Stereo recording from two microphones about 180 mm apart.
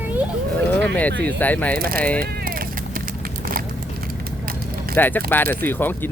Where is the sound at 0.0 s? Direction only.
10° right (ahead or behind).